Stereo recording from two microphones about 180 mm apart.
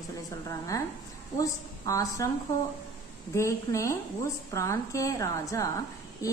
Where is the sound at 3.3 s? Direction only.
15° left (ahead or behind).